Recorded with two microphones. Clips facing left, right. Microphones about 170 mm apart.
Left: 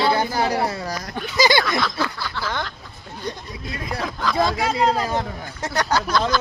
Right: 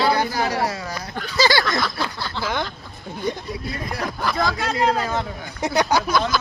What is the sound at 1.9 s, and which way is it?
Speech, 15° right (ahead or behind).